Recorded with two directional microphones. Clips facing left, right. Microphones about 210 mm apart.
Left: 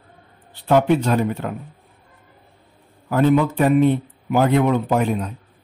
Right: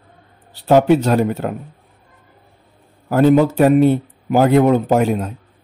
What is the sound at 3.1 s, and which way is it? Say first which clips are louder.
Speech: right 4 dB; 40° right (ahead or behind).